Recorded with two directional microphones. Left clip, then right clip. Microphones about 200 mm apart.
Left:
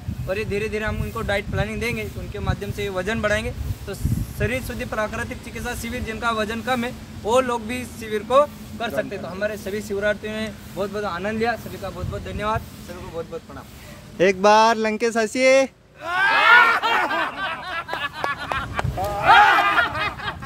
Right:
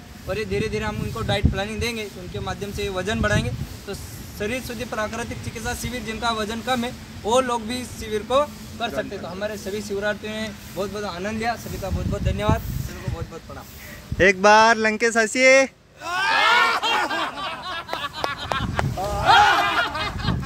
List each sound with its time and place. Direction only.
0.3 s speech: 5° left (ahead or behind)
10.8 s speech: 30° right (ahead or behind)
12.3 s speech: 55° right (ahead or behind)
14.1 s speech: 5° left (ahead or behind)
16.1 s snicker: 10° right (ahead or behind)
19.2 s snicker: 10° right (ahead or behind)